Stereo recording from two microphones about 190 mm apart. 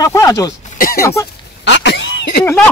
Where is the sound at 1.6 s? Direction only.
70° left (ahead or behind).